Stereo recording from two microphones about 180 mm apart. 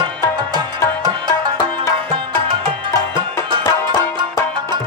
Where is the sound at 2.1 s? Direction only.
30° right (ahead or behind).